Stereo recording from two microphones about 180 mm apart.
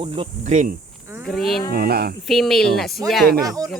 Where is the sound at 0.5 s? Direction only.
45° right (ahead or behind).